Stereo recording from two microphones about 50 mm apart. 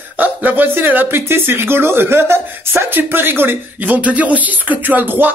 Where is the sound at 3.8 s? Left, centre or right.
Right.